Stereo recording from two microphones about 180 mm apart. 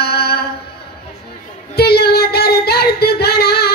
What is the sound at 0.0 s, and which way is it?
Mantra, 60° left (ahead or behind).